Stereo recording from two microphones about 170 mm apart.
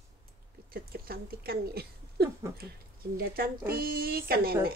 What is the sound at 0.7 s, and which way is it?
A woman's voice, 60° right (ahead or behind).